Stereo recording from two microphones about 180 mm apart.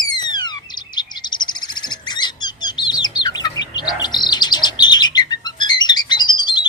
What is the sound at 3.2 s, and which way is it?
Chirp, 25° left (ahead or behind).